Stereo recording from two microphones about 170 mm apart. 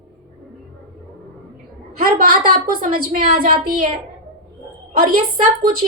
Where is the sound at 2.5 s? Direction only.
60° right (ahead or behind).